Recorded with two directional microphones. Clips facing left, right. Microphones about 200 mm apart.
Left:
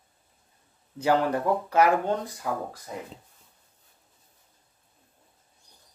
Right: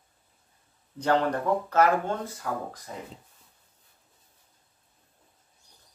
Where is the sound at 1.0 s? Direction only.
5° left (ahead or behind).